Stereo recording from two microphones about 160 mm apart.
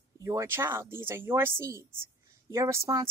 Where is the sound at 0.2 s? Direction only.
20° right (ahead or behind).